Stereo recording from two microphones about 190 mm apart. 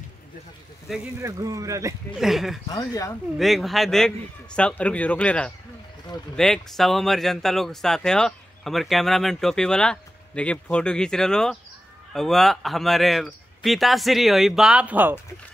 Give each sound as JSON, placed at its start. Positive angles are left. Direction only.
{"t": 1.2, "sound": "speech", "side_deg": -15}
{"t": 2.1, "sound": "speech", "side_deg": 0}
{"t": 2.7, "sound": "speech", "side_deg": 20}
{"t": 3.3, "sound": "speech", "side_deg": 0}